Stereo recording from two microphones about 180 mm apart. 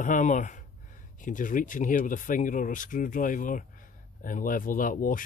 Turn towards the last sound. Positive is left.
turn(degrees=50)  # may be behind; listen again after turning